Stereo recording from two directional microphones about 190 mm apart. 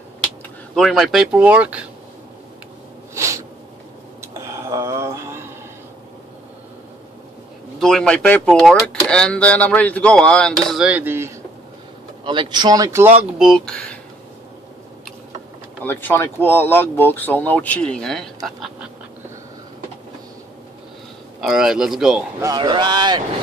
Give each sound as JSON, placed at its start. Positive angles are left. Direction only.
{"t": 0.7, "sound": "speech", "side_deg": 0}
{"t": 3.2, "sound": "snort", "side_deg": -15}
{"t": 4.2, "sound": "a sound", "side_deg": -15}
{"t": 7.8, "sound": "speech", "side_deg": 5}
{"t": 12.3, "sound": "speech", "side_deg": -25}
{"t": 13.4, "sound": "speech", "side_deg": 0}
{"t": 15.8, "sound": "speech", "side_deg": 10}
{"t": 21.4, "sound": "speech", "side_deg": 0}
{"t": 22.4, "sound": "speech", "side_deg": -20}